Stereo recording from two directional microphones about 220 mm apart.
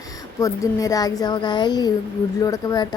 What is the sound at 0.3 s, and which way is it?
A woman's voice, 15° left (ahead or behind).